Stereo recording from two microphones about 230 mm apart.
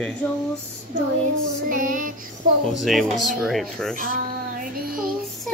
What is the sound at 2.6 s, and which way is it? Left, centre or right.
Speech, centre.